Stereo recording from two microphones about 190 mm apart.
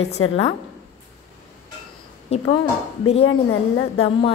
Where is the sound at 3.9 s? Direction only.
30° left (ahead or behind).